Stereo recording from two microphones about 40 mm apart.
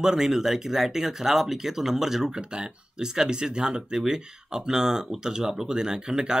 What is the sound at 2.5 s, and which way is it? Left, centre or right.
Speech, right.